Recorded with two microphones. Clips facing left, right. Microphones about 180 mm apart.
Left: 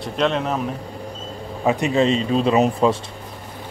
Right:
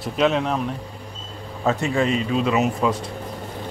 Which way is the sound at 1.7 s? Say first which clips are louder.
Left 3 dB; 20° left (ahead or behind).